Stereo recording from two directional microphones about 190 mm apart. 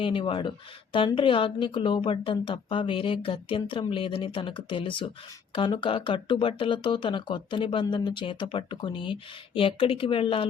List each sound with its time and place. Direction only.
0.0 s a woman's voice: 30° left (ahead or behind)